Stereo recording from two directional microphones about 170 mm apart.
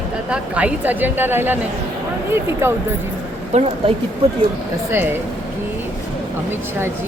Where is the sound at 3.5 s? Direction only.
40° right (ahead or behind).